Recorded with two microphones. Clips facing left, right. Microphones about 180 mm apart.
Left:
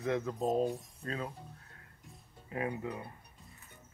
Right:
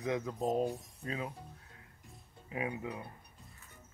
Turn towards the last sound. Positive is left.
turn(degrees=-5)  # may be behind; listen again after turning